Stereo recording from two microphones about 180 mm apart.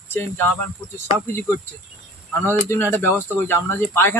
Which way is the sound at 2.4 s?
15° left (ahead or behind).